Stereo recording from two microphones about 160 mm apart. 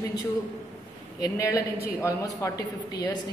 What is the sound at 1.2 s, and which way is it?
A woman's voice, 20° left (ahead or behind).